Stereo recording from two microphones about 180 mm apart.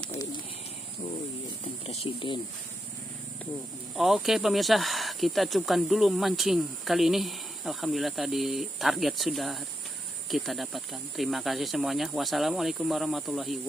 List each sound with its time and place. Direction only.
1.9 s speech: 25° left (ahead or behind)
3.9 s speech: centre (ahead or behind)